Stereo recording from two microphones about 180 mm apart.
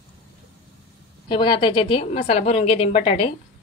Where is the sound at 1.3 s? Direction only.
25° left (ahead or behind).